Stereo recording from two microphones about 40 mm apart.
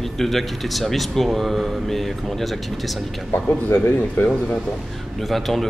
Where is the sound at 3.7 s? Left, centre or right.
Left.